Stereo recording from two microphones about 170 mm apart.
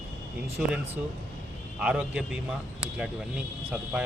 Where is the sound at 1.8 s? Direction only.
5° right (ahead or behind).